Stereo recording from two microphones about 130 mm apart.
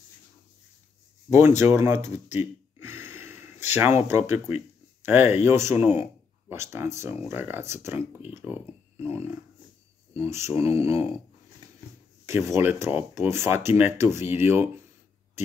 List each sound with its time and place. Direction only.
1.6 s speech: 20° right (ahead or behind)
2.8 s a sound: 20° right (ahead or behind)
4.1 s speech: 20° right (ahead or behind)
12.3 s speech: 20° right (ahead or behind)